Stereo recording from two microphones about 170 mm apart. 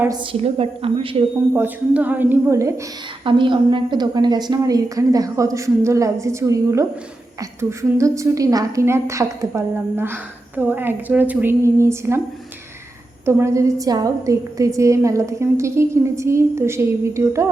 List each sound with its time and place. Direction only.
0.1 s a woman's voice: 35° right (ahead or behind)
1.5 s a woman's voice: 10° right (ahead or behind)
3.2 s a woman's voice: 30° right (ahead or behind)
13.2 s a woman's voice: 15° right (ahead or behind)